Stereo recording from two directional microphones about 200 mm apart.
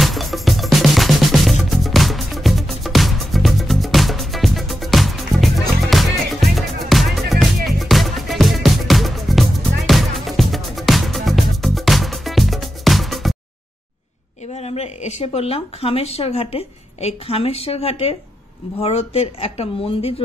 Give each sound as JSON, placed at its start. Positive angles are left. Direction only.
{"t": 0.0, "sound": "music", "side_deg": 0}
{"t": 14.5, "sound": "speech", "side_deg": 30}